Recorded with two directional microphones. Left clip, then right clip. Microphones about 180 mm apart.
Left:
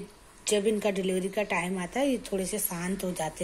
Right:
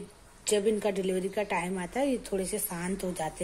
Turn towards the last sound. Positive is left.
turn(degrees=5)  # may be behind; listen again after turning